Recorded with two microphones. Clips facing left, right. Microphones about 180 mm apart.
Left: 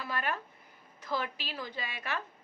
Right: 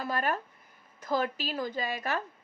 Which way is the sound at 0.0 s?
40° right (ahead or behind).